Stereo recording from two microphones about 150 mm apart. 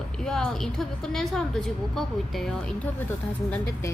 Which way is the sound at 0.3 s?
5° left (ahead or behind).